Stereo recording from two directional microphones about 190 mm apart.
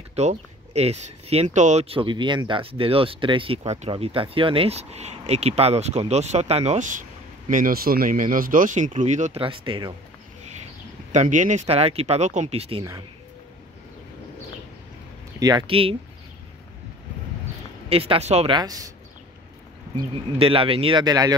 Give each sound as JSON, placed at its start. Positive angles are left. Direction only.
{"t": 0.1, "sound": "speech", "side_deg": -35}
{"t": 11.1, "sound": "speech", "side_deg": -40}
{"t": 15.3, "sound": "speech", "side_deg": -20}
{"t": 17.8, "sound": "speech", "side_deg": -30}
{"t": 18.6, "sound": "speech", "side_deg": -20}
{"t": 20.0, "sound": "speech", "side_deg": -25}